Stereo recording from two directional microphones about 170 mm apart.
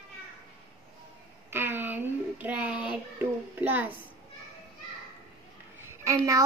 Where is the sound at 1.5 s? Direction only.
10° right (ahead or behind).